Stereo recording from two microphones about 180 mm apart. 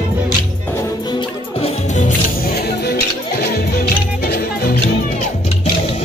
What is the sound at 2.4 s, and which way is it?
Music, 60° left (ahead or behind).